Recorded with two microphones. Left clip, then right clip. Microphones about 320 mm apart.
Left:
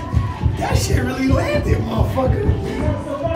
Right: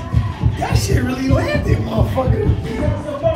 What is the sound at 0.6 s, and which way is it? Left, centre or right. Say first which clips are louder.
Speech: right 1 dB; centre.